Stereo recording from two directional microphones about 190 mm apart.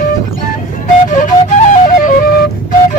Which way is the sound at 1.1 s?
40° left (ahead or behind).